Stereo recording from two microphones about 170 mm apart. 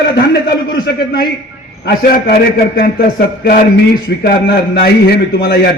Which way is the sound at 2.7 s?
70° left (ahead or behind).